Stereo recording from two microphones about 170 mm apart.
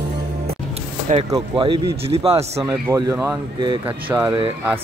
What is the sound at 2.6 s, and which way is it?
Speech, 15° right (ahead or behind).